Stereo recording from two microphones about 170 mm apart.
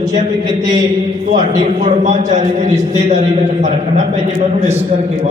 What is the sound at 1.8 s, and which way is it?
A man's voice, 45° right (ahead or behind).